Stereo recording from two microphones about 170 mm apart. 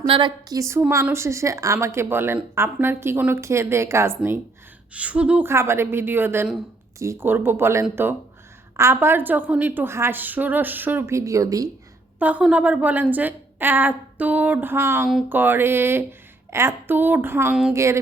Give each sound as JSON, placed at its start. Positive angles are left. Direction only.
{"t": 0.1, "sound": "a woman's voice", "side_deg": -30}
{"t": 12.2, "sound": "a woman's voice", "side_deg": -10}
{"t": 17.7, "sound": "a woman's voice", "side_deg": -15}